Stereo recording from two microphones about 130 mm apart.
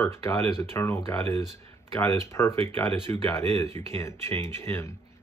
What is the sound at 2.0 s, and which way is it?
Speech, 20° left (ahead or behind).